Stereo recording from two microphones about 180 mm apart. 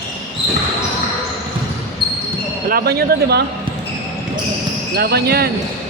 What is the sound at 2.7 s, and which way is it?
Speech, 60° right (ahead or behind).